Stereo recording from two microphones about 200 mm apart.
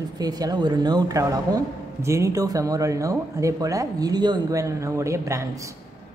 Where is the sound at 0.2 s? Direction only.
20° right (ahead or behind).